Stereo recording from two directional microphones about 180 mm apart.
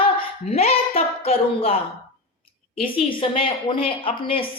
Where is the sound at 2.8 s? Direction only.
35° left (ahead or behind).